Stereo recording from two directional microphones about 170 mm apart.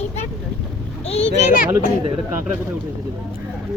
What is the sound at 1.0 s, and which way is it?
Speech, 40° left (ahead or behind).